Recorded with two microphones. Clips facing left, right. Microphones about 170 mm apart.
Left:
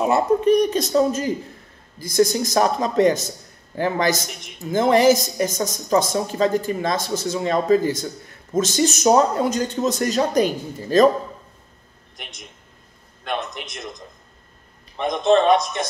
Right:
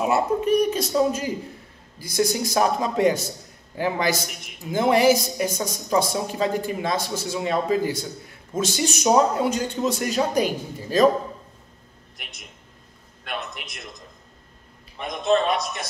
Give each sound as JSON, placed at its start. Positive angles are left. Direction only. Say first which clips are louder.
{"t": 0.0, "sound": "a woman's voice", "louder": "left 4 dB", "side_deg": -5}
{"t": 15.0, "sound": "speech", "louder": "left 5 dB", "side_deg": 35}